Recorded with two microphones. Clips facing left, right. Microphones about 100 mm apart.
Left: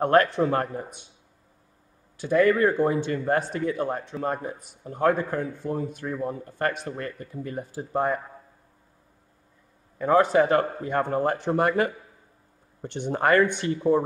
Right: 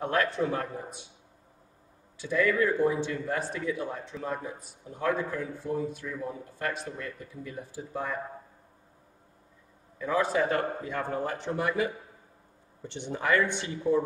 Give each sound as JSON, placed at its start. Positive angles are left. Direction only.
{"t": 0.0, "sound": "speech", "side_deg": 55}
{"t": 2.1, "sound": "speech", "side_deg": 55}
{"t": 9.9, "sound": "speech", "side_deg": 55}